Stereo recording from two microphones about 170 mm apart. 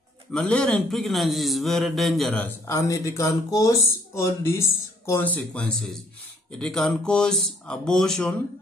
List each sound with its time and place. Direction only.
0.3 s a man's voice: 5° left (ahead or behind)
2.4 s a man's voice: 15° left (ahead or behind)